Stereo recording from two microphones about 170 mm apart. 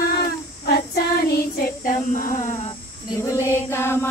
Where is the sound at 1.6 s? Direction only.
50° left (ahead or behind).